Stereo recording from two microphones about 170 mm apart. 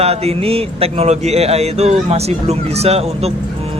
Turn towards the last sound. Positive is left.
turn(degrees=-35)  # may be behind; listen again after turning